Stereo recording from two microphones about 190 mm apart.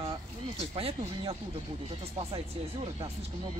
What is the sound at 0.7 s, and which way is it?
Speech, 30° right (ahead or behind).